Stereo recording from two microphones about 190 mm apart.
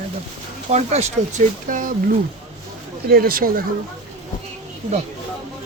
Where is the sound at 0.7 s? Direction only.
35° right (ahead or behind).